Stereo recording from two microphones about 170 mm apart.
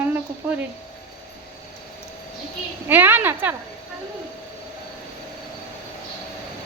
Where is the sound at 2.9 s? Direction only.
10° right (ahead or behind).